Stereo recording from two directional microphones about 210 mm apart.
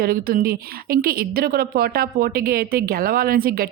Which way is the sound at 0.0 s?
45° right (ahead or behind).